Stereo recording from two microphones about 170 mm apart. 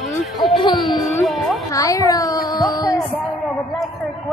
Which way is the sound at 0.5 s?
25° left (ahead or behind).